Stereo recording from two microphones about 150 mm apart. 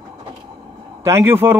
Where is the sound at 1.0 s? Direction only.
15° right (ahead or behind).